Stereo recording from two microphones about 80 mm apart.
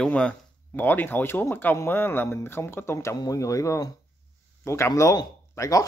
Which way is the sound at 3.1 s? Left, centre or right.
Left.